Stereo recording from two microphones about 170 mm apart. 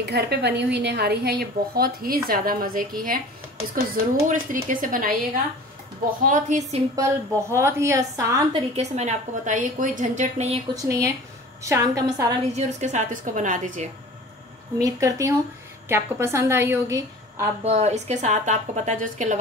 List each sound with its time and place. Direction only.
0.0 s a woman's voice: 75° right (ahead or behind); by 5.1 s 55° right (ahead or behind)
6.2 s a woman's voice: 50° right (ahead or behind)
7.0 s a woman's voice: 15° right (ahead or behind)
8.7 s a woman's voice: 40° right (ahead or behind)
10.8 s a woman's voice: 20° right (ahead or behind)
12.5 s a woman's voice: 45° right (ahead or behind)
14.8 s a woman's voice: 20° right (ahead or behind)
17.6 s a woman's voice: 40° right (ahead or behind)